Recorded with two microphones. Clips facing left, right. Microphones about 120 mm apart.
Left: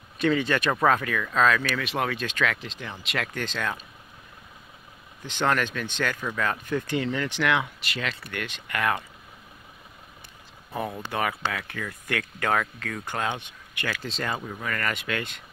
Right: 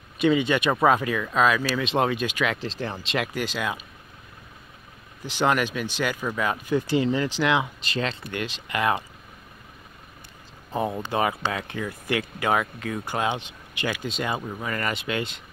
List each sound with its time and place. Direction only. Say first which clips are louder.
0.4 s speech: right 2 dB; 15° right (ahead or behind)
2.5 s speech: right 6 dB; 35° right (ahead or behind)
3.2 s speech: right 3 dB; 10° right (ahead or behind)
5.4 s speech: right 2 dB; 15° right (ahead or behind)
6.8 s speech: right 4 dB; 30° right (ahead or behind)
10.7 s speech: right 4 dB; 20° right (ahead or behind)